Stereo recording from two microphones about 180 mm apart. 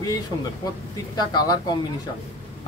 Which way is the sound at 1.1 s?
20° left (ahead or behind).